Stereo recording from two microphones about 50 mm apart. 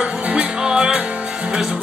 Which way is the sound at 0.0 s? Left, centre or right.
Right.